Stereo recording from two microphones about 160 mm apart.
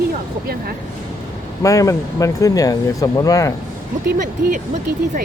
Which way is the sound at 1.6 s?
20° left (ahead or behind).